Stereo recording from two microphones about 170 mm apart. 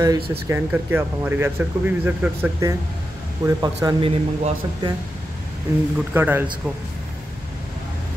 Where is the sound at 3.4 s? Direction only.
20° right (ahead or behind).